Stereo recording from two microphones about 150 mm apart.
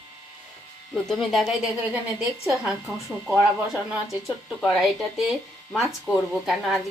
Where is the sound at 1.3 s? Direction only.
5° right (ahead or behind).